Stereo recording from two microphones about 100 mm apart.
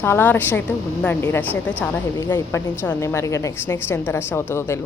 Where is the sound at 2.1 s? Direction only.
25° left (ahead or behind).